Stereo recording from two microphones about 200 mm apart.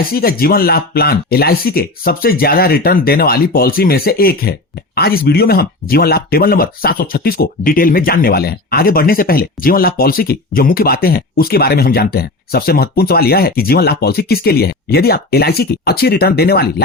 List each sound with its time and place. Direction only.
0.0 s speech: 50° left (ahead or behind)